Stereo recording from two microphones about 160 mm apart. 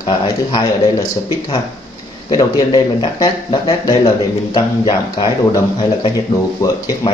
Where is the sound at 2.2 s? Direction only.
25° left (ahead or behind).